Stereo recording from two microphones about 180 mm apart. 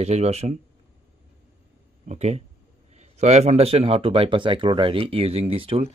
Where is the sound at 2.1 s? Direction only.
35° right (ahead or behind).